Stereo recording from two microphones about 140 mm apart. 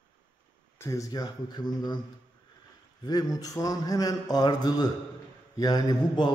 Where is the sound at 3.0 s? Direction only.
30° left (ahead or behind).